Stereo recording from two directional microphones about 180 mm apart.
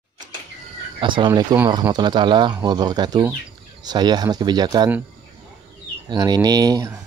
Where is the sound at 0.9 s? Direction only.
25° right (ahead or behind).